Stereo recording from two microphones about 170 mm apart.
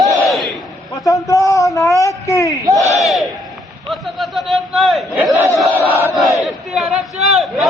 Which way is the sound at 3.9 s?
Centre (ahead or behind).